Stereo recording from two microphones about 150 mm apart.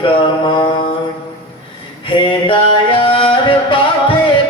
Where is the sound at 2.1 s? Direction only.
35° left (ahead or behind).